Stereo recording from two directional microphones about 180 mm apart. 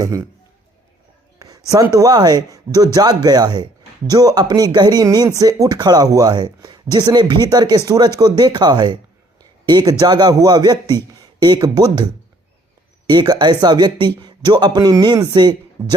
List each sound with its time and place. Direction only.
0.0 s a man's voice: 20° right (ahead or behind)
1.4 s a sound: 20° right (ahead or behind)
1.7 s speech: 20° right (ahead or behind)
13.1 s speech: 25° right (ahead or behind)